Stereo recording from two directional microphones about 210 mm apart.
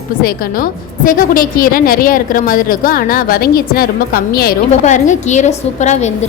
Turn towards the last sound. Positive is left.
turn(degrees=35)  # may be behind; listen again after turning